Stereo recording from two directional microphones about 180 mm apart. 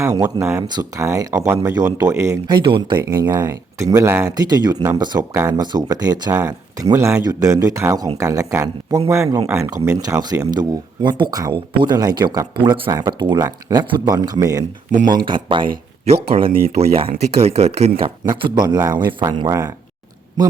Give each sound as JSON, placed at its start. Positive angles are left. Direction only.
{"t": 0.0, "sound": "a man's voice", "side_deg": -20}
{"t": 14.9, "sound": "speech", "side_deg": -50}
{"t": 15.3, "sound": "speech", "side_deg": -25}
{"t": 16.6, "sound": "speech", "side_deg": -35}